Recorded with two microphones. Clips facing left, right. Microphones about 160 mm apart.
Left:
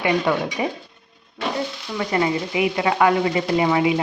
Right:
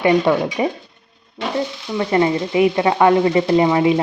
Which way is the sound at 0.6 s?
30° right (ahead or behind).